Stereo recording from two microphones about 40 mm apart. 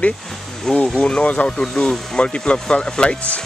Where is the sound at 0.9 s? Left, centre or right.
Left.